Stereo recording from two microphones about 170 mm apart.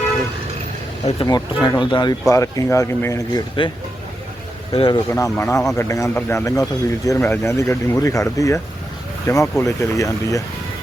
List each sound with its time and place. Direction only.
1.0 s speech: 30° left (ahead or behind)
4.7 s speech: 35° left (ahead or behind)
5.1 s speech: 15° left (ahead or behind)